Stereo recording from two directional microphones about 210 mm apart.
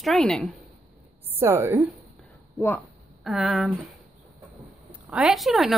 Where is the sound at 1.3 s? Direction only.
10° right (ahead or behind).